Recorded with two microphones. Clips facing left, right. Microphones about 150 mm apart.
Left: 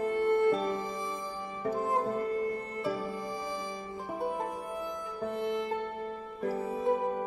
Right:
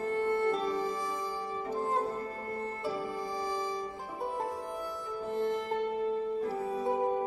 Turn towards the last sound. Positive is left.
turn(degrees=-30)  # may be behind; listen again after turning